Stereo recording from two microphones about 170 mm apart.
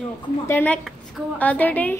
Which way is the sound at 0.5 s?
10° left (ahead or behind).